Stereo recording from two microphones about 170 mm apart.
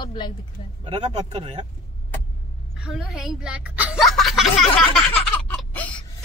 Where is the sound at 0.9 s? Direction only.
40° right (ahead or behind).